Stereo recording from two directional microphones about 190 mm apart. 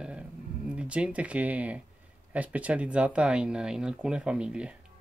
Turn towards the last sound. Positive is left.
turn(degrees=-5)  # may be behind; listen again after turning